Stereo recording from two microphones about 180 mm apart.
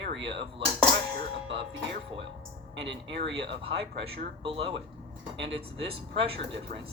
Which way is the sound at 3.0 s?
80° right.